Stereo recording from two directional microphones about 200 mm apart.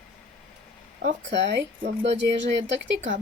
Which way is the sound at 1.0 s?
60° right (ahead or behind).